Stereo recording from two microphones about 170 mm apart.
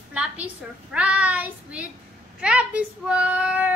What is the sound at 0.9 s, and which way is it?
Child singing, 5° right (ahead or behind).